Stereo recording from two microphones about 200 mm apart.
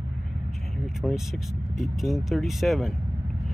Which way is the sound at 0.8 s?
Centre (ahead or behind).